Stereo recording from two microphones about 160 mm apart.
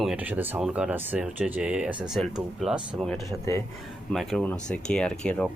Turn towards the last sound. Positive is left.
turn(degrees=5)  # may be behind; listen again after turning